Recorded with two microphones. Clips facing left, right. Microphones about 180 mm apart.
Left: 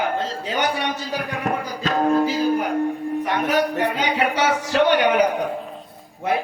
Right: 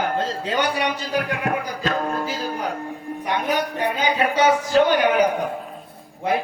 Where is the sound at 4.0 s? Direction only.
80° left.